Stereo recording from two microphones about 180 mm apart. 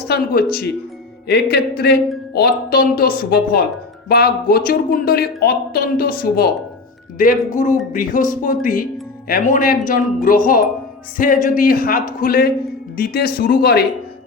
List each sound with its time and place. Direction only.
1.3 s speech: 65° left (ahead or behind)